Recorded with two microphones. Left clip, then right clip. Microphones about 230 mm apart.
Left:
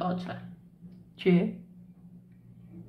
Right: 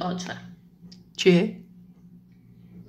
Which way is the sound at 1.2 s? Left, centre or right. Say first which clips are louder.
Right 7 dB; centre.